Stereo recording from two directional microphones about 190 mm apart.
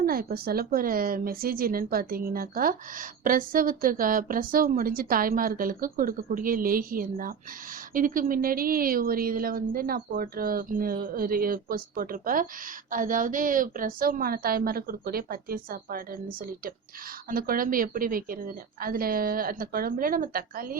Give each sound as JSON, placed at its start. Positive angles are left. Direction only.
{"t": 0.0, "sound": "speech", "side_deg": -50}